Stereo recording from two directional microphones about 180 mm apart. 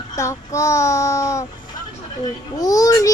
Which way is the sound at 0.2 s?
15° left (ahead or behind).